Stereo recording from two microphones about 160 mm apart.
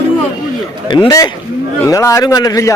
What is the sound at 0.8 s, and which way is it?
A man's voice, 30° left (ahead or behind).